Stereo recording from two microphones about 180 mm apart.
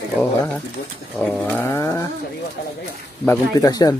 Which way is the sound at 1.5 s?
10° left (ahead or behind).